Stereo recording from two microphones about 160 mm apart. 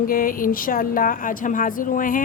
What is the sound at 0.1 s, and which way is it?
A woman's voice, 60° left (ahead or behind).